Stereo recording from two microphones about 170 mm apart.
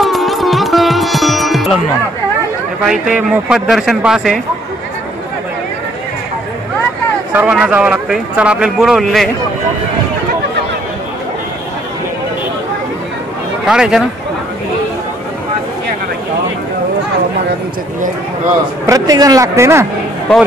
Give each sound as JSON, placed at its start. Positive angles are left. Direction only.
{"t": 0.0, "sound": "music", "side_deg": 0}
{"t": 2.8, "sound": "a man's voice", "side_deg": -5}
{"t": 7.3, "sound": "a man's voice", "side_deg": -5}
{"t": 13.7, "sound": "a man's voice", "side_deg": -5}
{"t": 18.9, "sound": "speech", "side_deg": -20}